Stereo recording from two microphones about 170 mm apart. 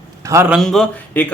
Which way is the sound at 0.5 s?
Centre (ahead or behind).